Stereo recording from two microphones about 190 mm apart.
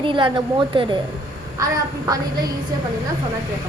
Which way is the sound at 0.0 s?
25° right (ahead or behind).